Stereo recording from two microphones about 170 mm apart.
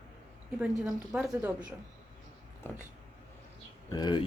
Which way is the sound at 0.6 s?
5° right (ahead or behind).